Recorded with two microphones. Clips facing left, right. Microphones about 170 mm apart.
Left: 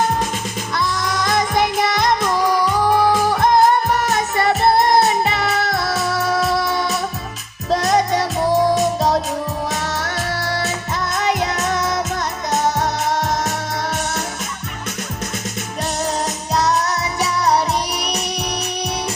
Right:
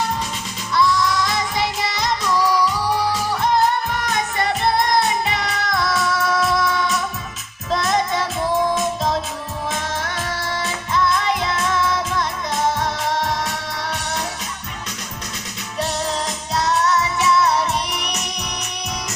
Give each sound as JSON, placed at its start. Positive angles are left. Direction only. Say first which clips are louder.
{"t": 0.7, "sound": "music", "louder": "right 5 dB", "side_deg": 50}
{"t": 16.6, "sound": "music", "louder": "even", "side_deg": 40}